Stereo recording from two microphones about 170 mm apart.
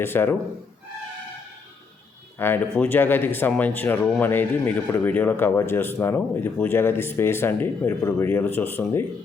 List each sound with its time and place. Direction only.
0.0 s speech: 15° left (ahead or behind)
2.4 s speech: 10° left (ahead or behind)